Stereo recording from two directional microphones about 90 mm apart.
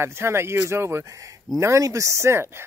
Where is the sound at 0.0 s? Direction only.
30° right (ahead or behind).